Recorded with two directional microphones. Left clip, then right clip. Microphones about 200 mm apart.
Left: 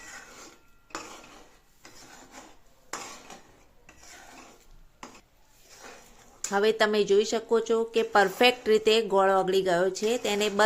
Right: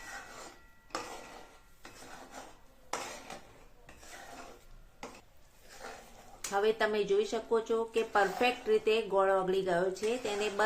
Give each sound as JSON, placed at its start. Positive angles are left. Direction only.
{"t": 6.5, "sound": "speech", "side_deg": 40}